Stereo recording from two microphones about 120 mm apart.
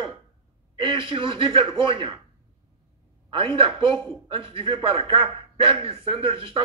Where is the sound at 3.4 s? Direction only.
50° right (ahead or behind).